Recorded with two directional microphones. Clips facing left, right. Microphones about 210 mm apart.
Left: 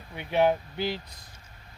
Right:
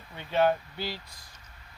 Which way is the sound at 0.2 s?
15° left (ahead or behind).